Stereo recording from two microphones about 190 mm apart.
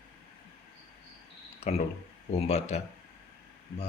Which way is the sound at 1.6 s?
35° left (ahead or behind).